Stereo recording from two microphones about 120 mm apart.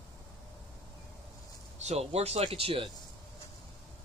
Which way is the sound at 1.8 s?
65° right (ahead or behind).